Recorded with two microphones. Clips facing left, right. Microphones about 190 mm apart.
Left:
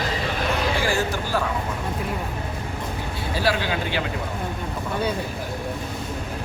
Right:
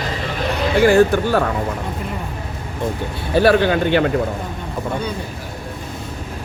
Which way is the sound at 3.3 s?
60° right (ahead or behind).